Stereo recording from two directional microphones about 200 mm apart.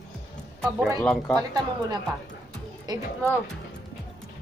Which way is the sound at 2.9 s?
20° right (ahead or behind).